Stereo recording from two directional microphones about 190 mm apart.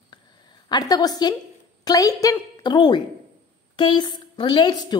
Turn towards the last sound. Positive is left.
turn(degrees=25)  # may be behind; listen again after turning